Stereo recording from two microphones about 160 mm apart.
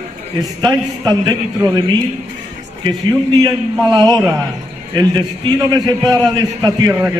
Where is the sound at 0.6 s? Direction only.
25° right (ahead or behind).